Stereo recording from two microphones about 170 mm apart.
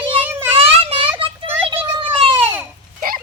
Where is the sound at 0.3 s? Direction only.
15° right (ahead or behind).